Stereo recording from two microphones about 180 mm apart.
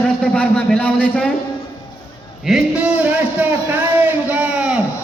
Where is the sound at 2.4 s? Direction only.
5° right (ahead or behind).